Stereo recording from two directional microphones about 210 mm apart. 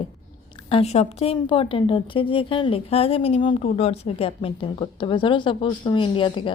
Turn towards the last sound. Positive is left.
turn(degrees=25)  # may be behind; listen again after turning